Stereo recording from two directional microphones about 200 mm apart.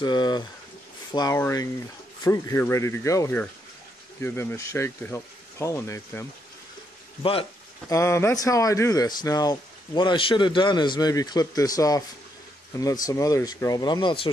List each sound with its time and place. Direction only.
0.0 s speech: 20° left (ahead or behind)
7.9 s speech: 15° left (ahead or behind)